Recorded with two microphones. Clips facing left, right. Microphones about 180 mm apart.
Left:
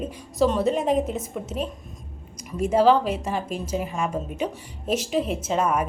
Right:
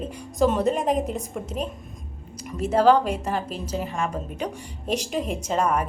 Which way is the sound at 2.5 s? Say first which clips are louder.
Even; 10° left (ahead or behind).